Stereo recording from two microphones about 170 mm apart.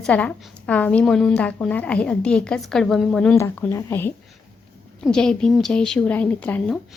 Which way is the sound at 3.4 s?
15° left (ahead or behind).